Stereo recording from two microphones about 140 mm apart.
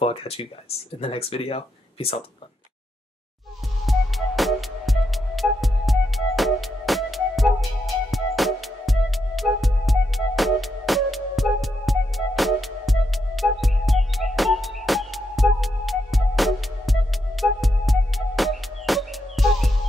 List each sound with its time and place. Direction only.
0.0 s speech: 45° left (ahead or behind)
3.8 s music: centre (ahead or behind)